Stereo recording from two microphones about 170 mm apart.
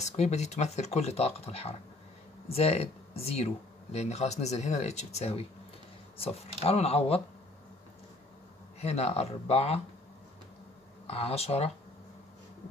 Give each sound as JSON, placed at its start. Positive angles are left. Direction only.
{"t": 0.0, "sound": "speech", "side_deg": 40}
{"t": 8.8, "sound": "speech", "side_deg": 40}
{"t": 11.1, "sound": "speech", "side_deg": 35}